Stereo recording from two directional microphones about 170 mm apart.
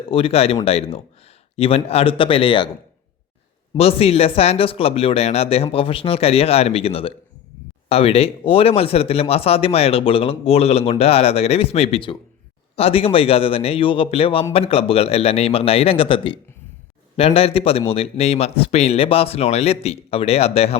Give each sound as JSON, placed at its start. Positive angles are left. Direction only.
{"t": 0.1, "sound": "speech", "side_deg": 35}
{"t": 3.8, "sound": "speech", "side_deg": 35}